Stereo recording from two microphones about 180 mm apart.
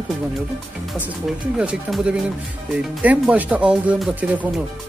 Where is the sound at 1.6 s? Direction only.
5° right (ahead or behind).